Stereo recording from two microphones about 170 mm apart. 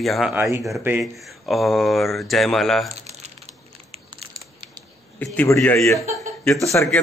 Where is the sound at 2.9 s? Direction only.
40° right (ahead or behind).